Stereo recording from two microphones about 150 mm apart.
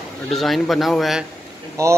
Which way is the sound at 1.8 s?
20° right (ahead or behind).